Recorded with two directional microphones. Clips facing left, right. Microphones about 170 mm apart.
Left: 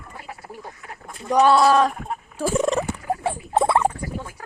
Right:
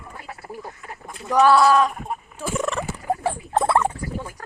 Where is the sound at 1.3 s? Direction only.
20° left (ahead or behind).